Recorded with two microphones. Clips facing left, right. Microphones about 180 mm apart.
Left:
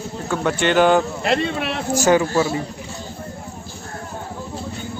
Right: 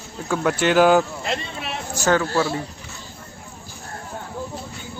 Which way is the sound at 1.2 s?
65° left (ahead or behind).